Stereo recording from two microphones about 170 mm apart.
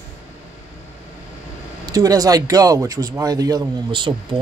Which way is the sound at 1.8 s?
20° right (ahead or behind).